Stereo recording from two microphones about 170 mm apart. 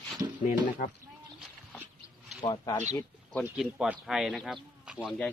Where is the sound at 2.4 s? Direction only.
25° left (ahead or behind).